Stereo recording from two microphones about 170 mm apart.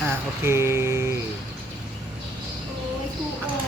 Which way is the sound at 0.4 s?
15° right (ahead or behind).